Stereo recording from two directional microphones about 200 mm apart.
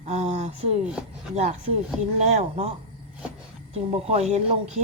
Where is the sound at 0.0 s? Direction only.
30° right (ahead or behind).